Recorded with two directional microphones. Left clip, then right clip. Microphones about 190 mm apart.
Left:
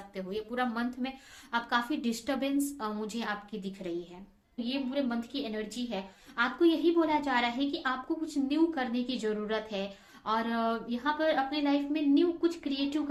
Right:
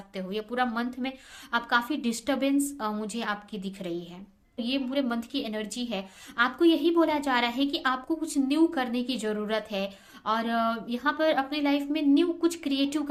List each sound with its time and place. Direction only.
0.1 s a woman's voice: 30° right (ahead or behind)